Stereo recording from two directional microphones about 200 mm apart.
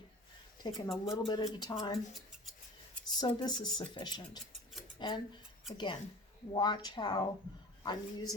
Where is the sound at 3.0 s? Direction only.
20° left (ahead or behind).